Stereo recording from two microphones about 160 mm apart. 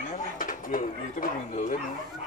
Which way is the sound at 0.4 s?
60° left (ahead or behind).